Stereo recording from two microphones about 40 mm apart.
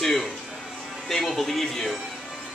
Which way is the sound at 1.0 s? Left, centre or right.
Centre.